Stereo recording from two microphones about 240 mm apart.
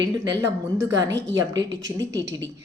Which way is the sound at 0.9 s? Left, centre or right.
Right.